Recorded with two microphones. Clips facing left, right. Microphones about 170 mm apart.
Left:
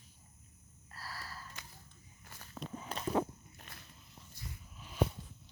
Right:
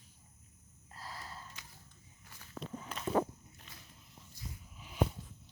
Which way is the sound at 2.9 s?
35° left (ahead or behind).